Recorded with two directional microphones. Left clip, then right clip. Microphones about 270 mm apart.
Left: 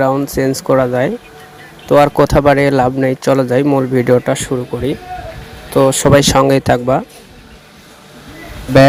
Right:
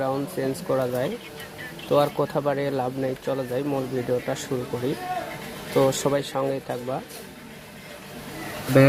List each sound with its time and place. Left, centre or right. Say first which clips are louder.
0.0 s speech: left 12 dB; left
5.7 s speech: left 12 dB; left